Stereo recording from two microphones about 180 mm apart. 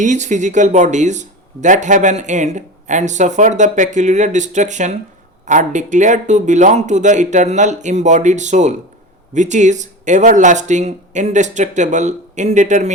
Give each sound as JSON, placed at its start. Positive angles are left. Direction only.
{"t": 0.0, "sound": "speech", "side_deg": -45}